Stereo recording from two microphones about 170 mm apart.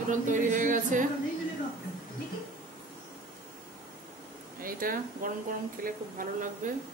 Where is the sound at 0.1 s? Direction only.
50° right (ahead or behind).